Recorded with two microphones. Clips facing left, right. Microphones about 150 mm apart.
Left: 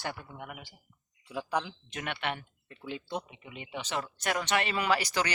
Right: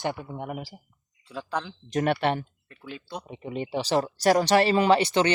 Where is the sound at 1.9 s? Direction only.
40° right (ahead or behind).